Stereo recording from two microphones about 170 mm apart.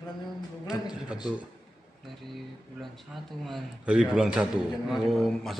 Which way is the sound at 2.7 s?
Centre (ahead or behind).